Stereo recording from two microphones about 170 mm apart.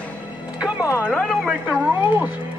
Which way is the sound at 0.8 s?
15° left (ahead or behind).